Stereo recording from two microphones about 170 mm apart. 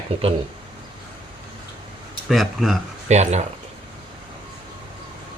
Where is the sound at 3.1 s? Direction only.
40° right (ahead or behind).